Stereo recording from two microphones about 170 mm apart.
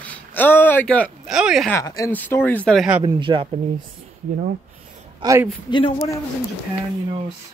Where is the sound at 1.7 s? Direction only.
20° left (ahead or behind).